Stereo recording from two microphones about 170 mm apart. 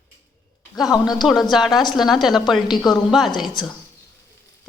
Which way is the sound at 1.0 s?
Centre (ahead or behind).